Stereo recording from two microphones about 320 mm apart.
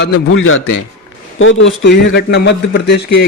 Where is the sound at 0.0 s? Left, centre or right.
Left.